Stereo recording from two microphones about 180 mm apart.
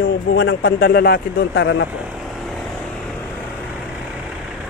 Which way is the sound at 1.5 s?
90° left.